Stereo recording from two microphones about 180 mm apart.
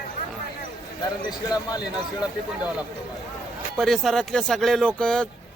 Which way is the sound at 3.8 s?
Centre (ahead or behind).